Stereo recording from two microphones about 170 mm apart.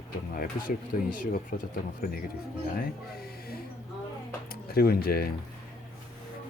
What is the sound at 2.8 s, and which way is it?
Speech, 65° left (ahead or behind).